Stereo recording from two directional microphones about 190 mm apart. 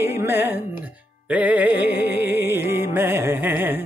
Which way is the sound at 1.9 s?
60° left (ahead or behind).